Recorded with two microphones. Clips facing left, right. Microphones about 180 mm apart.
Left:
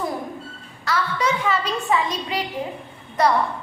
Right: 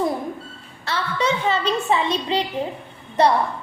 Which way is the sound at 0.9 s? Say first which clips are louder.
Even; 25° right (ahead or behind).